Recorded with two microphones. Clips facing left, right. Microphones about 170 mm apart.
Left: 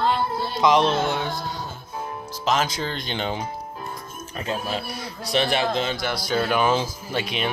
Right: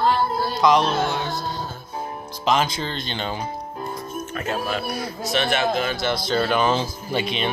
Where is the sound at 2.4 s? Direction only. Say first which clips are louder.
Right 2 dB; 5° left (ahead or behind).